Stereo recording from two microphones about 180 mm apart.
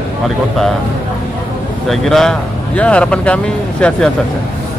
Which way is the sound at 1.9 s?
Centre (ahead or behind).